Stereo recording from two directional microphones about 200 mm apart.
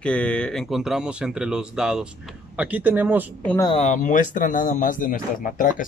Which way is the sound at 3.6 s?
30° left (ahead or behind).